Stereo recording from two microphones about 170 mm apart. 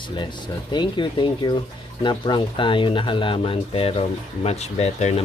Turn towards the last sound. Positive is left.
turn(degrees=40)  # may be behind; listen again after turning